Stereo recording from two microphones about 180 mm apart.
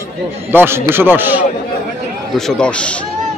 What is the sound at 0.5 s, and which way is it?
Speech, 15° right (ahead or behind).